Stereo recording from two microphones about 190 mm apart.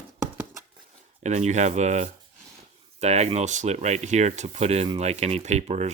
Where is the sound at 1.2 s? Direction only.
40° right (ahead or behind).